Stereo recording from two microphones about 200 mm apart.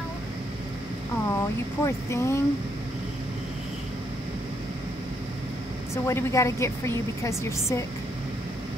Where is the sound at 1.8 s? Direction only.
15° left (ahead or behind).